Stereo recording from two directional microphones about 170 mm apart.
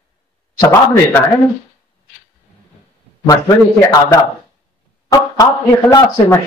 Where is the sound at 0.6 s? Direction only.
15° left (ahead or behind).